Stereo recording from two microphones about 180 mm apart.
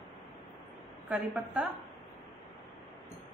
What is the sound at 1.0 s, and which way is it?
Speech, 5° right (ahead or behind).